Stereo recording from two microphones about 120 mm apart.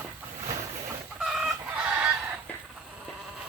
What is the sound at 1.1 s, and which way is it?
Chicken, 5° right (ahead or behind).